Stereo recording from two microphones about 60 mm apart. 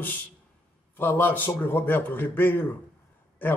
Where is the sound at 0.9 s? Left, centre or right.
Left.